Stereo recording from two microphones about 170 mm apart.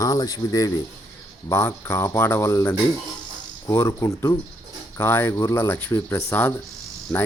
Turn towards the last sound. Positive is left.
turn(degrees=20)  # may be behind; listen again after turning